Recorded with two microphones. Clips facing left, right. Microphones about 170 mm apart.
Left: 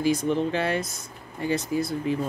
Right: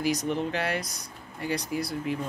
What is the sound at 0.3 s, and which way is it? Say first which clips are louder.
Speech: left 4 dB; 25° left (ahead or behind).